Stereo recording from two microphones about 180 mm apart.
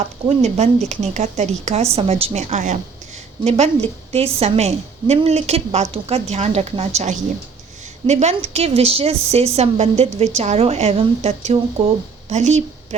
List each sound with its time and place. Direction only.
0.3 s a woman's voice: 35° right (ahead or behind)